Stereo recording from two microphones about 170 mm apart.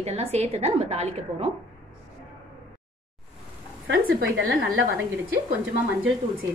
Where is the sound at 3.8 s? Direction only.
80° right.